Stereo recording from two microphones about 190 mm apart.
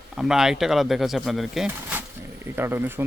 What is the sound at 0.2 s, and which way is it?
Speech, centre (ahead or behind).